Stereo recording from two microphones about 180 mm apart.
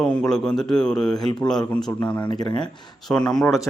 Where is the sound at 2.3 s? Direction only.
25° left (ahead or behind).